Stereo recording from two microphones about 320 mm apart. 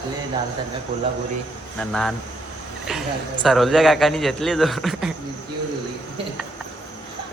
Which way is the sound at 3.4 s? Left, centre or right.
Centre.